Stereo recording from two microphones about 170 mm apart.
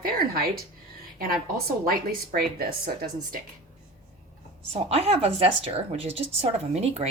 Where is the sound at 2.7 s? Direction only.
60° right (ahead or behind).